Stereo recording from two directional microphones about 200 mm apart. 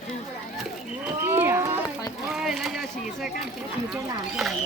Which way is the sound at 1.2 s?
10° right (ahead or behind).